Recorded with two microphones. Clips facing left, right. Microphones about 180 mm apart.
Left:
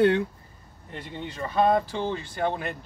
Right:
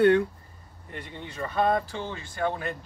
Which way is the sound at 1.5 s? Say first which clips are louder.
Left 3 dB; 25° left (ahead or behind).